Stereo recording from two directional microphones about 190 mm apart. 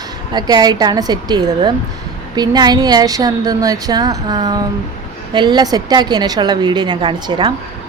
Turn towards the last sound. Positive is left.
turn(degrees=-25)  # may be behind; listen again after turning